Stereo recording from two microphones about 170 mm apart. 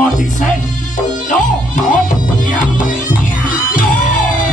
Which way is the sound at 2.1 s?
50° left (ahead or behind).